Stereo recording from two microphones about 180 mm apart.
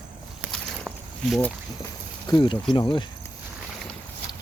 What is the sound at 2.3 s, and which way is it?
Speech, 25° left (ahead or behind).